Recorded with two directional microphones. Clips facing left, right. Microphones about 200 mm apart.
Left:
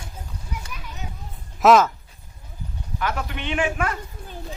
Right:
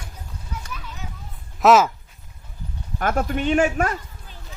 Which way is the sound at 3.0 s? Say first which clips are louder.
Right 6 dB; 50° right (ahead or behind).